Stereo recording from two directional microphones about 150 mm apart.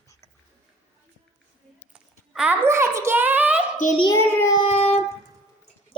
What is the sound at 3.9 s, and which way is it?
Speech, 30° left (ahead or behind).